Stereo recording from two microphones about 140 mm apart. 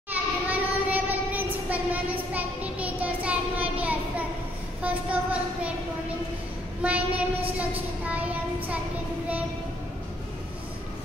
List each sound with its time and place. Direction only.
0.1 s a sound: 10° right (ahead or behind)
4.9 s child singing: 10° right (ahead or behind)
6.8 s child singing: 10° right (ahead or behind)